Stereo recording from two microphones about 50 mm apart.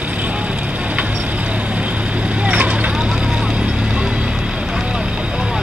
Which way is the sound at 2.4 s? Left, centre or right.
Right.